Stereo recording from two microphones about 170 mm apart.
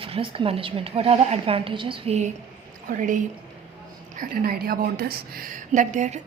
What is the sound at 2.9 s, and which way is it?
A woman's voice, 50° right (ahead or behind).